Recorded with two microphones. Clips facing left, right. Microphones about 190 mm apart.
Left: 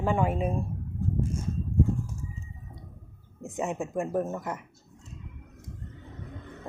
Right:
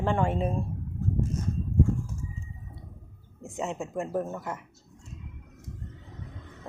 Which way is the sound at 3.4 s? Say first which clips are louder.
Left 2 dB; 15° left (ahead or behind).